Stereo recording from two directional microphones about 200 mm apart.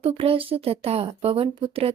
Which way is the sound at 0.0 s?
30° right (ahead or behind).